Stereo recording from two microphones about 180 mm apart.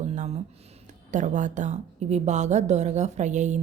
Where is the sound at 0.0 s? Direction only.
40° right (ahead or behind).